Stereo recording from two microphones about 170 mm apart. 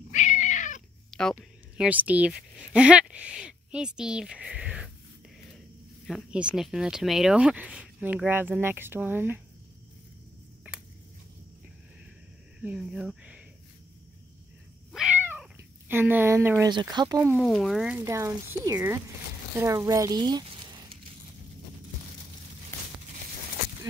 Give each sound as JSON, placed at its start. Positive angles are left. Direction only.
{"t": 0.1, "sound": "cat", "side_deg": 45}
{"t": 1.1, "sound": "a sound", "side_deg": 5}
{"t": 1.9, "sound": "speech", "side_deg": -10}
{"t": 6.0, "sound": "speech", "side_deg": -5}
{"t": 12.6, "sound": "speech", "side_deg": -5}
{"t": 14.9, "sound": "cat", "side_deg": -5}
{"t": 15.9, "sound": "speech", "side_deg": -10}
{"t": 17.4, "sound": "speech", "side_deg": 0}
{"t": 18.0, "sound": "speech", "side_deg": -15}